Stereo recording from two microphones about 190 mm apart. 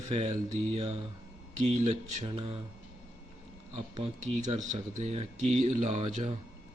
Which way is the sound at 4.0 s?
40° right (ahead or behind).